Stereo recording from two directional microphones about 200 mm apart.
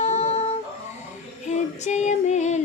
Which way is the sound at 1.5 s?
35° left (ahead or behind).